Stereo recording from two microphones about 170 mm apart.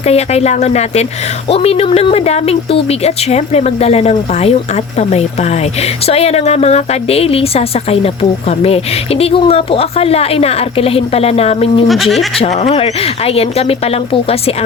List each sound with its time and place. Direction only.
0.0 s a woman's voice: 40° left (ahead or behind)
11.9 s speech: centre (ahead or behind)
12.4 s a woman's voice: 35° left (ahead or behind)